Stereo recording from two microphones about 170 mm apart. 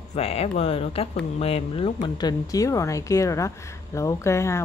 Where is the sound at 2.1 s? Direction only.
20° left (ahead or behind).